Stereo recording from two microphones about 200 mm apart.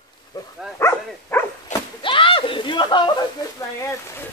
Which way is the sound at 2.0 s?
25° left (ahead or behind).